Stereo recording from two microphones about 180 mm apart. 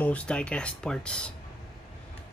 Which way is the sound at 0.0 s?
10° left (ahead or behind).